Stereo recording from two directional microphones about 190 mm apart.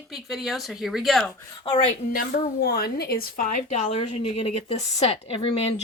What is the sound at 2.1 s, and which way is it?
A woman's voice, 50° left (ahead or behind).